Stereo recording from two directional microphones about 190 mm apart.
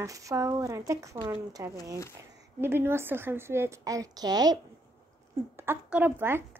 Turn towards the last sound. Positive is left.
turn(degrees=-10)  # may be behind; listen again after turning